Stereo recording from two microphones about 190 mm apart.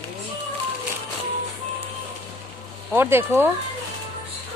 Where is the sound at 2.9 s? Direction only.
10° right (ahead or behind).